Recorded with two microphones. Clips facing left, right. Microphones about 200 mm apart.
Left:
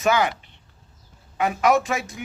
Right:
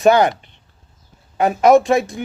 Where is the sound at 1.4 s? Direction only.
35° right (ahead or behind).